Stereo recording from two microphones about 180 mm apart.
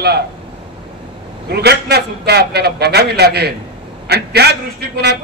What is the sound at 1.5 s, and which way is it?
A man's voice, 65° right (ahead or behind).